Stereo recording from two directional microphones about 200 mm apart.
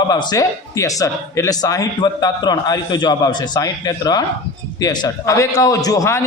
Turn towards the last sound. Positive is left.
turn(degrees=15)  # may be behind; listen again after turning